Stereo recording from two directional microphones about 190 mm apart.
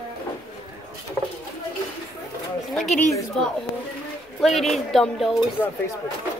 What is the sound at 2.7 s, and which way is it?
A child's voice, centre (ahead or behind).